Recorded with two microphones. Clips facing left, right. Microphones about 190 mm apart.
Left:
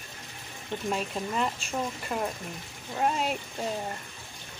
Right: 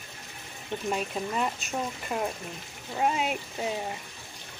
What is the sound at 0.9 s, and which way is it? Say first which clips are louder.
Speech: right 1 dB; 5° right (ahead or behind).